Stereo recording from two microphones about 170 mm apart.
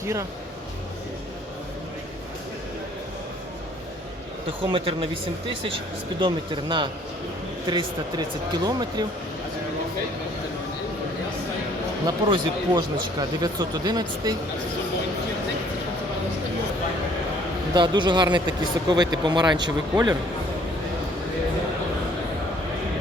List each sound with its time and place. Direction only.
0.0 s speech: 15° right (ahead or behind)
4.6 s speech: 30° right (ahead or behind)
12.0 s speech: 25° right (ahead or behind)
17.7 s speech: 25° right (ahead or behind)